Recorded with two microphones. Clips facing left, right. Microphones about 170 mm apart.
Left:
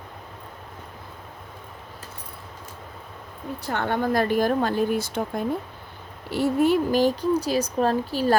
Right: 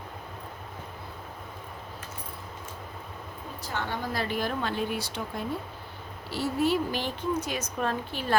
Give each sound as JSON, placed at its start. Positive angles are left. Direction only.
{"t": 3.6, "sound": "speech", "side_deg": 60}